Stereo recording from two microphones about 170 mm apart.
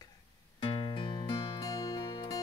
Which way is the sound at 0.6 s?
30° left (ahead or behind).